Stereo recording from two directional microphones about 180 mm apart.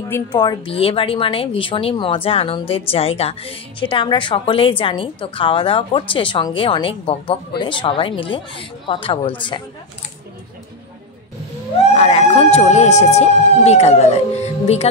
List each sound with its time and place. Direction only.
0.3 s a woman's voice: 25° left (ahead or behind)
11.9 s speech: 35° left (ahead or behind)